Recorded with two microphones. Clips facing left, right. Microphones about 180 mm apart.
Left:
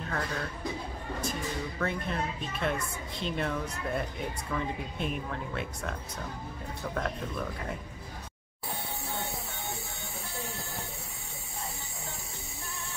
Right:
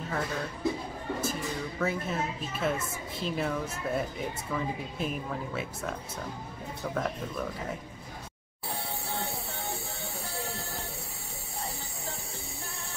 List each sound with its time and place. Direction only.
0.1 s speech: 5° right (ahead or behind)
1.8 s speech: 5° right (ahead or behind)
9.1 s music: 35° right (ahead or behind)